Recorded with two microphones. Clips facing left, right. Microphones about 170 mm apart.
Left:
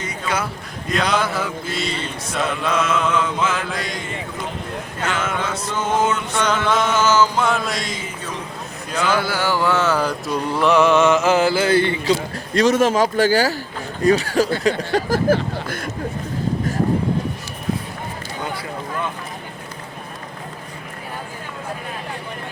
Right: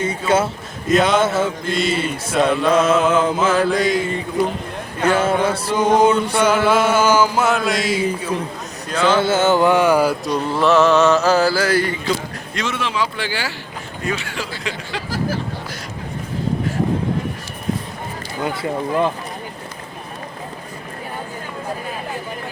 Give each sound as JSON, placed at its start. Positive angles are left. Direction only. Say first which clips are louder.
{"t": 0.0, "sound": "speech", "louder": "right 7 dB", "side_deg": -25}
{"t": 0.9, "sound": "a sound", "louder": "right 5 dB", "side_deg": 0}
{"t": 1.2, "sound": "speech", "louder": "right 6 dB", "side_deg": -25}
{"t": 1.6, "sound": "a sound", "louder": "right 6 dB", "side_deg": 0}
{"t": 2.6, "sound": "mantra", "louder": "right 3 dB", "side_deg": -35}
{"t": 3.7, "sound": "a sound", "louder": "right 10 dB", "side_deg": 0}
{"t": 5.1, "sound": "mantra", "louder": "right 7 dB", "side_deg": -30}
{"t": 5.7, "sound": "chant", "louder": "right 6 dB", "side_deg": -15}
{"t": 9.0, "sound": "speech", "louder": "right 5 dB", "side_deg": -25}
{"t": 10.2, "sound": "mantra", "louder": "right 1 dB", "side_deg": 10}
{"t": 12.5, "sound": "speech", "louder": "left 8 dB", "side_deg": 40}